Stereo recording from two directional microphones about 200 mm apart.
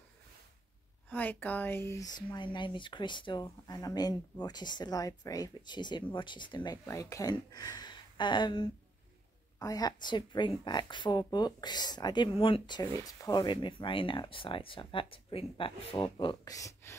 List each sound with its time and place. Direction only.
1.1 s speech: 10° left (ahead or behind)